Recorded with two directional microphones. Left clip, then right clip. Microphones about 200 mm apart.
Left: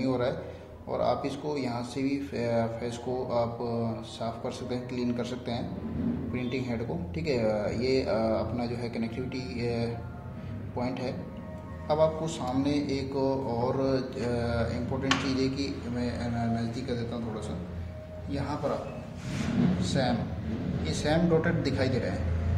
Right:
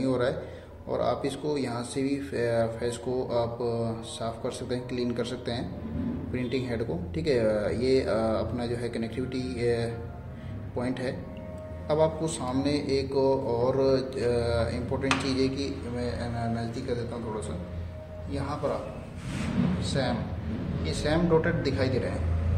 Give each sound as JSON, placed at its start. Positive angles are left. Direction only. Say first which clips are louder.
{"t": 0.0, "sound": "a sound", "louder": "right 2 dB", "side_deg": -15}
{"t": 0.9, "sound": "a man's voice", "louder": "even", "side_deg": -15}
{"t": 18.3, "sound": "a man's voice", "louder": "even", "side_deg": 0}
{"t": 19.8, "sound": "a man's voice", "louder": "even", "side_deg": 0}